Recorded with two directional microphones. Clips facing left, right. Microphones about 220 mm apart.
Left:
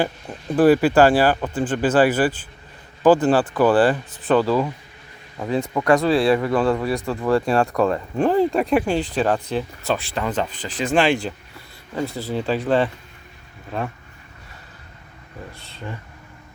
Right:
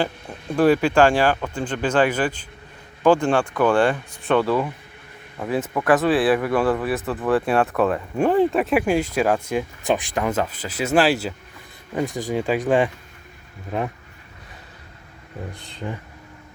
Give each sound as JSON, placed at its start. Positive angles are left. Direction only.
{"t": 0.5, "sound": "speech", "side_deg": 5}
{"t": 15.6, "sound": "speech", "side_deg": -15}